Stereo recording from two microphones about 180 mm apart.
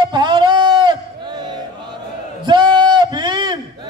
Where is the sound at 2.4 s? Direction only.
25° right (ahead or behind).